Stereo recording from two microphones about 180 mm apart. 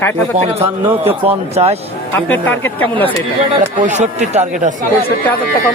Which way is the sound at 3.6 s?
40° right (ahead or behind).